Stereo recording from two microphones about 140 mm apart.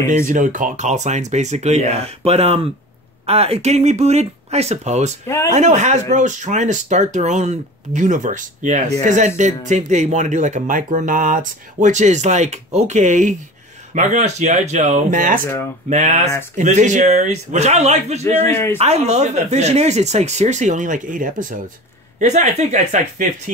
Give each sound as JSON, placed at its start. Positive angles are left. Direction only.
{"t": 0.3, "sound": "speech", "side_deg": -65}
{"t": 5.2, "sound": "speech", "side_deg": 20}
{"t": 5.5, "sound": "speech", "side_deg": -55}
{"t": 15.9, "sound": "speech", "side_deg": -55}
{"t": 18.2, "sound": "a man's voice", "side_deg": 15}
{"t": 18.8, "sound": "speech", "side_deg": -50}
{"t": 22.2, "sound": "speech", "side_deg": -55}